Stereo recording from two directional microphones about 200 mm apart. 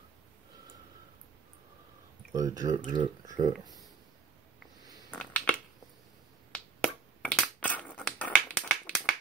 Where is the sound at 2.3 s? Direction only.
20° right (ahead or behind).